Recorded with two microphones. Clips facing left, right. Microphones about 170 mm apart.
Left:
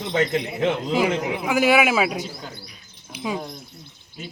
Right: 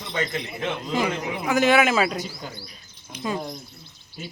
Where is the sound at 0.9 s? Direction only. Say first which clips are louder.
Left 4 dB; 10° left (ahead or behind).